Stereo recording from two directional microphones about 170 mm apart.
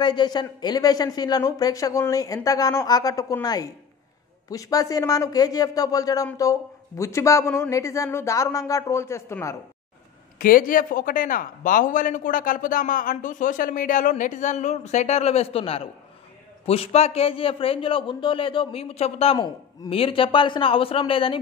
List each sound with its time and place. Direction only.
0.0 s a woman's voice: 25° left (ahead or behind)
10.4 s a man's voice: 55° left (ahead or behind); by 21.4 s 30° left (ahead or behind)